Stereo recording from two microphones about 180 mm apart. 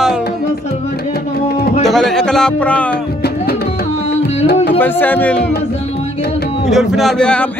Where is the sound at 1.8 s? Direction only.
Centre (ahead or behind).